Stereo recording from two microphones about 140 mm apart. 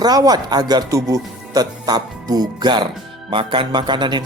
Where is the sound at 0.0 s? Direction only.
30° right (ahead or behind).